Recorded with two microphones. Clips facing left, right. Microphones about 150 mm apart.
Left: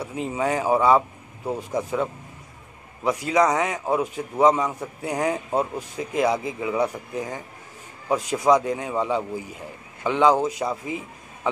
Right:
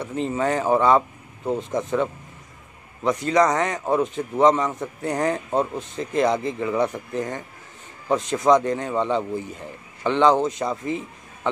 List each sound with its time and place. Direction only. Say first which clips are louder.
0.0 s speech: right 2 dB; 10° left (ahead or behind)